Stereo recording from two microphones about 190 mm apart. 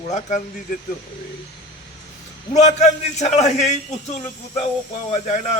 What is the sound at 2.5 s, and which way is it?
A man's voice, 35° left (ahead or behind).